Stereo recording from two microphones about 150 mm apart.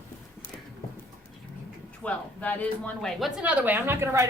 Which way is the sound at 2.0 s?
10° left (ahead or behind).